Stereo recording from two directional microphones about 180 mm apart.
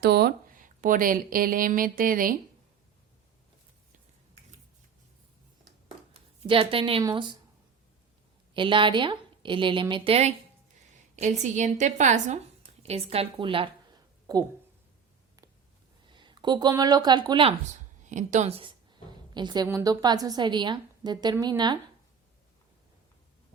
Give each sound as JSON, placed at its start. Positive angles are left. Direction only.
{"t": 0.0, "sound": "speech", "side_deg": -65}
{"t": 6.5, "sound": "a woman's voice", "side_deg": -30}
{"t": 8.5, "sound": "a woman's voice", "side_deg": -25}
{"t": 12.8, "sound": "a sound", "side_deg": -35}
{"t": 16.0, "sound": "speech", "side_deg": -25}
{"t": 18.1, "sound": "a woman's voice", "side_deg": -45}